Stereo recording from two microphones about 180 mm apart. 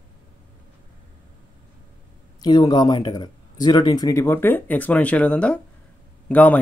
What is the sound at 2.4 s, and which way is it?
Speech, 20° left (ahead or behind).